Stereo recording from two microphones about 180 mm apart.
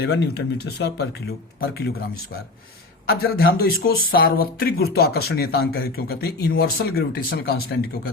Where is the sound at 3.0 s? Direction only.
60° left (ahead or behind).